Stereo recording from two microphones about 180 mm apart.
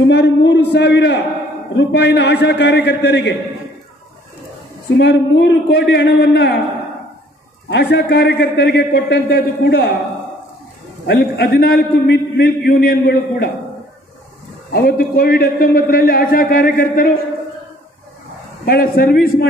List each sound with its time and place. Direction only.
0.0 s a man's voice: 75° left (ahead or behind)
4.9 s a man's voice: 70° left (ahead or behind)
7.7 s a man's voice: 65° left (ahead or behind)
11.1 s a man's voice: 60° left (ahead or behind)
14.7 s a man's voice: 55° left (ahead or behind)
18.7 s a man's voice: 55° left (ahead or behind)